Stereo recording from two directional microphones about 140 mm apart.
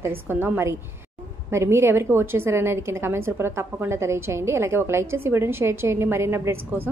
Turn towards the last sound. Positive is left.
turn(degrees=-15)  # may be behind; listen again after turning